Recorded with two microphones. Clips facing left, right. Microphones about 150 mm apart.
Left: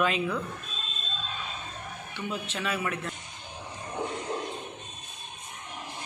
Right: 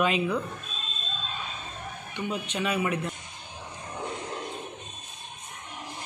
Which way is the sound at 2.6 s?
15° right (ahead or behind).